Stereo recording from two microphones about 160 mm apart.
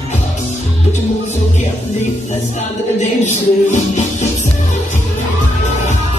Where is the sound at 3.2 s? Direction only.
50° left (ahead or behind).